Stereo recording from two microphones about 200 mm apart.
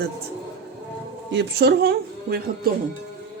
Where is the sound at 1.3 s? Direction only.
55° right (ahead or behind).